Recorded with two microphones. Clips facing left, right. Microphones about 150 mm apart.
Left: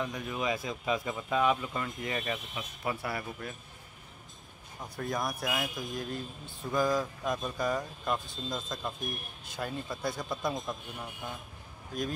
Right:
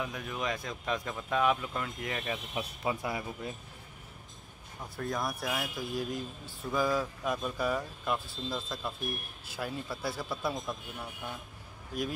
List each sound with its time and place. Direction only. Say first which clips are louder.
0.0 s speech: left 2 dB; centre (ahead or behind)
2.8 s speech: even; 15° right (ahead or behind)
4.9 s speech: left 1 dB; centre (ahead or behind)
11.9 s speech: even; 10° right (ahead or behind)